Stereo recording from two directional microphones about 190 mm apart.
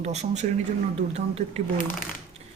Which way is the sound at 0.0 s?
35° right (ahead or behind).